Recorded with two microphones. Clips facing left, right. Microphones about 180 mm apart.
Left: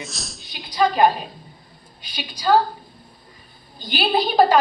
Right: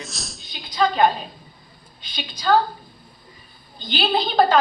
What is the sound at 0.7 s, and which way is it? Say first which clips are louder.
Speech: left 1 dB; 10° left (ahead or behind).